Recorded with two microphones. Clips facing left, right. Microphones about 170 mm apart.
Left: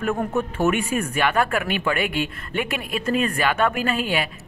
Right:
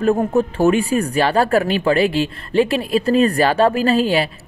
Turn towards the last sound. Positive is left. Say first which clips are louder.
# right 7 dB
turn(degrees=-35)  # may be behind; listen again after turning